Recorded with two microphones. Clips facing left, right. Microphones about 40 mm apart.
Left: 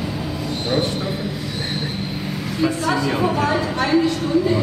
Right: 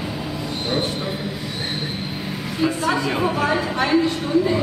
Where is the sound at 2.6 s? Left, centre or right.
Centre.